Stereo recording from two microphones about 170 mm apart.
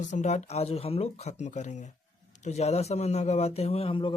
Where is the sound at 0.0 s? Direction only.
45° left (ahead or behind).